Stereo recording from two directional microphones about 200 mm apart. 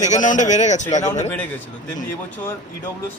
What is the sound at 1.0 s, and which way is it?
Speech, 10° left (ahead or behind).